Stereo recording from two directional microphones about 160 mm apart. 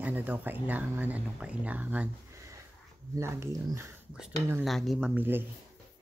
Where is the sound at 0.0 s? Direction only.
10° right (ahead or behind).